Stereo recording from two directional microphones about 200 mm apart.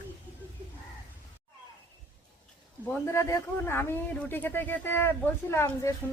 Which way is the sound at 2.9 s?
15° left (ahead or behind).